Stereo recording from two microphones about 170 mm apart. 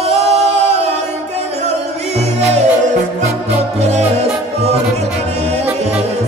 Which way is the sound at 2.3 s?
35° right (ahead or behind).